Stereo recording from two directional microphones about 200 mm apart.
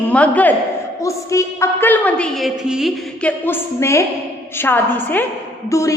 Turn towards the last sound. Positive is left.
turn(degrees=15)  # may be behind; listen again after turning